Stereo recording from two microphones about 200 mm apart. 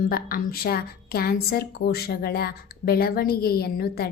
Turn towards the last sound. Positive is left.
turn(degrees=50)  # may be behind; listen again after turning